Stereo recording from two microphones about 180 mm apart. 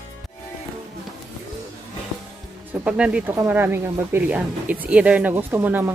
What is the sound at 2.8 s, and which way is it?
Speech, 5° right (ahead or behind).